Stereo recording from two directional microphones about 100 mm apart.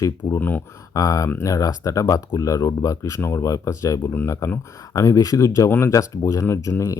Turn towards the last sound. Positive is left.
turn(degrees=30)  # may be behind; listen again after turning